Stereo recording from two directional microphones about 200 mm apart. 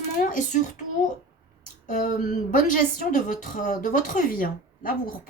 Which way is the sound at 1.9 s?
40° left (ahead or behind).